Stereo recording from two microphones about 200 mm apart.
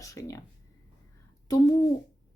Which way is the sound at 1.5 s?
20° left (ahead or behind).